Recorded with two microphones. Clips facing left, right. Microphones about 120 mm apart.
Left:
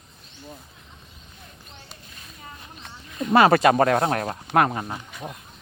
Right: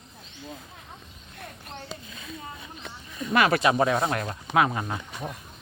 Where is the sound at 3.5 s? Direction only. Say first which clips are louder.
Left 4 dB; 50° left (ahead or behind).